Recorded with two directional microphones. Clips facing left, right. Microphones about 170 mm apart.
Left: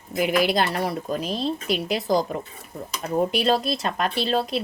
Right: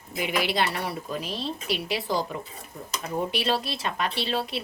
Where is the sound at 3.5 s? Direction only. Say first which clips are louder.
Left 5 dB; 45° left (ahead or behind).